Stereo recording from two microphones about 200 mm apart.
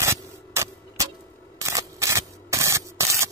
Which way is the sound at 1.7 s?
15° right (ahead or behind).